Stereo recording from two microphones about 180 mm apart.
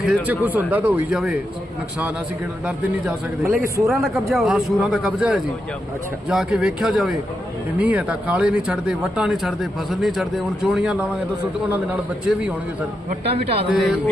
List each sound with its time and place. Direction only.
0.0 s speech: 5° right (ahead or behind)
3.4 s speech: 15° right (ahead or behind)
3.8 s a man's voice: centre (ahead or behind)
13.7 s a man's voice: centre (ahead or behind)